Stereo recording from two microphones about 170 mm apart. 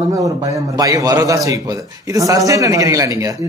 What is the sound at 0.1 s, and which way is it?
A man's voice, 20° right (ahead or behind).